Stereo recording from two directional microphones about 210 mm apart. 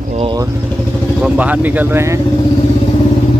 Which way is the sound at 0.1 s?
25° right (ahead or behind).